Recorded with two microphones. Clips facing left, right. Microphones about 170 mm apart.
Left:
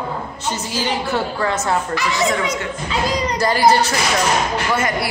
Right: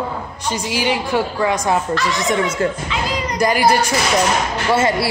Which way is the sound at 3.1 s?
35° left (ahead or behind).